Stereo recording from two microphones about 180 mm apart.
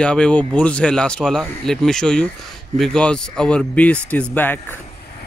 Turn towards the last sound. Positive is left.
turn(degrees=10)  # may be behind; listen again after turning